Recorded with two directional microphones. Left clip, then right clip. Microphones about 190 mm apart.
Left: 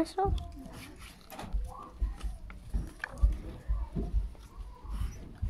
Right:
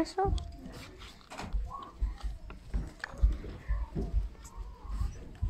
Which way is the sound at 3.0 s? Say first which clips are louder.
Left 2 dB; 30° left (ahead or behind).